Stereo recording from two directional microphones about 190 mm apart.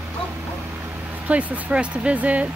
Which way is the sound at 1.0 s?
10° right (ahead or behind).